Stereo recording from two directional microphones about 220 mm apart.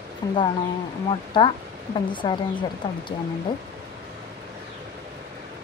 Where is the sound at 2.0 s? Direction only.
20° left (ahead or behind).